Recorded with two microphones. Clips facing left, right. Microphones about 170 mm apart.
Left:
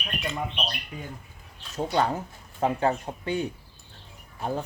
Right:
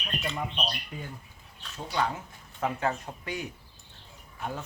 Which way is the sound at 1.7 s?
40° left (ahead or behind).